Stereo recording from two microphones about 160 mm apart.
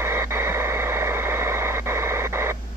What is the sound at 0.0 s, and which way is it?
Radio, 15° right (ahead or behind).